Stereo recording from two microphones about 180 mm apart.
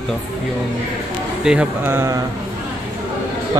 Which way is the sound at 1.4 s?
10° right (ahead or behind).